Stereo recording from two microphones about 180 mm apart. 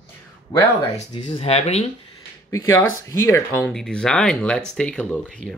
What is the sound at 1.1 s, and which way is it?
Speech, 30° left (ahead or behind).